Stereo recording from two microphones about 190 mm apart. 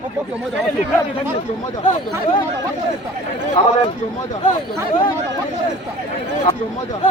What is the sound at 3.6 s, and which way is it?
Speech, 40° left (ahead or behind).